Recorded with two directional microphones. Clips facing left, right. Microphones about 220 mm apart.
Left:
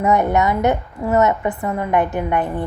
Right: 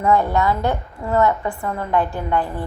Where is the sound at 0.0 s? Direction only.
20° left (ahead or behind).